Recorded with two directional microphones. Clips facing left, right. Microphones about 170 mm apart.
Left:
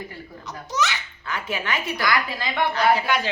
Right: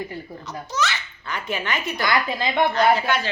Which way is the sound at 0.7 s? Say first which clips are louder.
Even; 15° left (ahead or behind).